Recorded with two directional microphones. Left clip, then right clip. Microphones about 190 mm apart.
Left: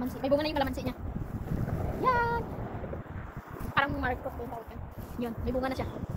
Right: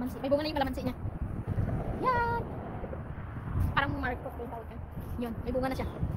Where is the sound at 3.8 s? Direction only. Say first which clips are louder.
Left 2 dB; 20° right (ahead or behind).